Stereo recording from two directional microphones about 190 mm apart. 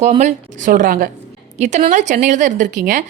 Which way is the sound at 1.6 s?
35° right (ahead or behind).